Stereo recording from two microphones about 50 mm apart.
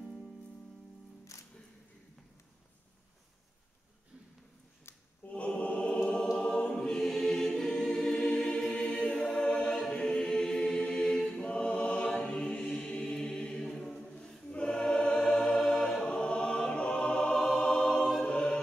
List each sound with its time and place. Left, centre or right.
1.3 s music: left
4.9 s a sound: left
5.3 s choir: left